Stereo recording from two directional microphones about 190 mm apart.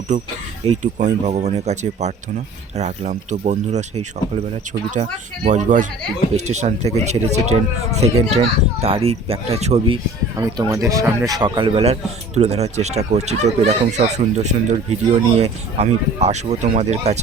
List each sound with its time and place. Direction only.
0.1 s a man's voice: 40° right (ahead or behind)
5.5 s a man's voice: 40° right (ahead or behind)
10.3 s a man's voice: 15° right (ahead or behind); by 17.2 s 35° right (ahead or behind)